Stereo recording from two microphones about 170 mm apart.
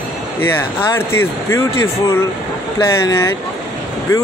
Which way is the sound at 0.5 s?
15° left (ahead or behind).